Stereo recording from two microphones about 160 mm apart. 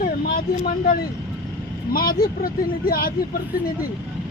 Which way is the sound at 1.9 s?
65° left (ahead or behind).